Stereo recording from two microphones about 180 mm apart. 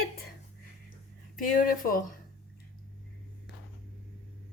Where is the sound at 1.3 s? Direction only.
50° left (ahead or behind).